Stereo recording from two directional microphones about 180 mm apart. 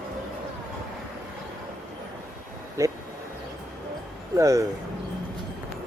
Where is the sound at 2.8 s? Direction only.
15° right (ahead or behind).